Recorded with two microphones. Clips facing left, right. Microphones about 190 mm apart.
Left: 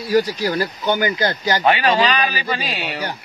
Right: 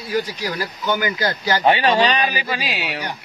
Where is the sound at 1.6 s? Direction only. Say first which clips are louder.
Right 1 dB; 25° right (ahead or behind).